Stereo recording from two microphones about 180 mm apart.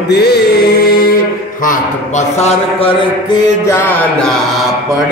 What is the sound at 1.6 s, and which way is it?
A man's voice, 45° left (ahead or behind).